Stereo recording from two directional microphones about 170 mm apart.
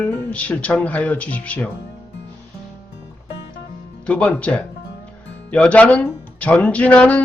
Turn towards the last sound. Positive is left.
turn(degrees=10)  # may be behind; listen again after turning